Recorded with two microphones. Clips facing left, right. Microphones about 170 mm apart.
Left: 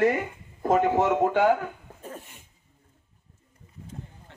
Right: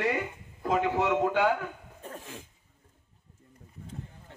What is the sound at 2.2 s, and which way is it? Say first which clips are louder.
Cough: right 9 dB; 90° right.